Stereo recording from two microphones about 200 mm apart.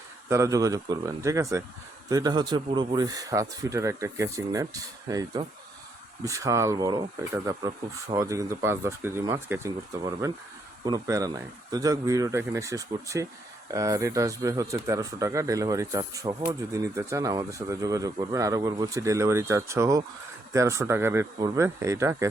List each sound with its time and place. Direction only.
0.3 s speech: 15° right (ahead or behind)